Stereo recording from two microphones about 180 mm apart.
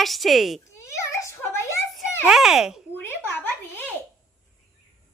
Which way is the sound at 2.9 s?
10° left (ahead or behind).